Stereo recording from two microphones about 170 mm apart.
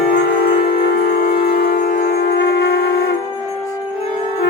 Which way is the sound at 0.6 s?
60° left (ahead or behind).